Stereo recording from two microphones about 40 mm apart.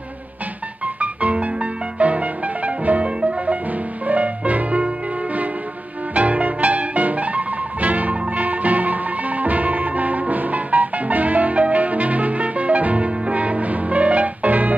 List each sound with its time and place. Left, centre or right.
0.9 s music: right